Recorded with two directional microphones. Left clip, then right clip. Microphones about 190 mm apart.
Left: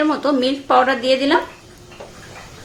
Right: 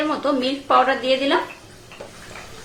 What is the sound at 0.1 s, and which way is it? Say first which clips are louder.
A woman's voice: left 3 dB; 30° left (ahead or behind).